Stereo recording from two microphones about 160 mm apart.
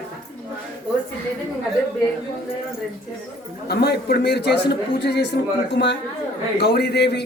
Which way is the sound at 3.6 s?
80° left.